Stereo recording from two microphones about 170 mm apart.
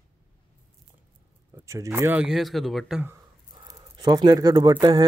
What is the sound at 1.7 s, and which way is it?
Speech, 15° right (ahead or behind).